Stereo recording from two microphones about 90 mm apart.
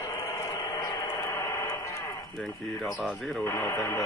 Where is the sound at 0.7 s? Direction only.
35° left (ahead or behind).